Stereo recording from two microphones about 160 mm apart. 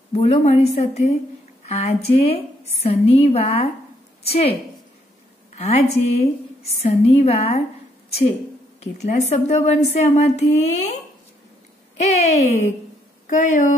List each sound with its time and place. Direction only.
0.1 s a woman's voice: 40° left (ahead or behind)
9.3 s a woman's voice: 45° left (ahead or behind)
12.0 s a woman's voice: 45° left (ahead or behind)